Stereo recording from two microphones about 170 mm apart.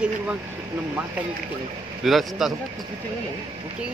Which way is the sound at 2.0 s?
Centre (ahead or behind).